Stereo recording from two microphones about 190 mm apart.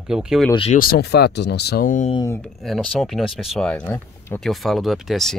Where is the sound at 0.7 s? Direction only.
55° left (ahead or behind).